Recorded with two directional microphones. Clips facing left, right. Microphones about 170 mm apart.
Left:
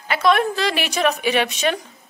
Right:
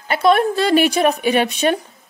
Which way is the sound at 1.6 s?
35° right (ahead or behind).